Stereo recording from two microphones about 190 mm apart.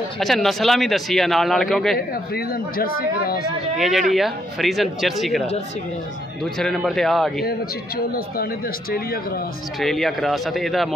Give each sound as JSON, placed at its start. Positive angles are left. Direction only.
{"t": 0.2, "sound": "speech", "side_deg": 0}
{"t": 2.0, "sound": "speech", "side_deg": 50}
{"t": 3.7, "sound": "speech", "side_deg": 0}
{"t": 6.6, "sound": "speech", "side_deg": 5}
{"t": 9.8, "sound": "speech", "side_deg": 0}